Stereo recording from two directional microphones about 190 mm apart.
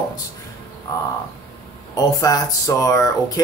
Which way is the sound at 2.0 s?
20° left (ahead or behind).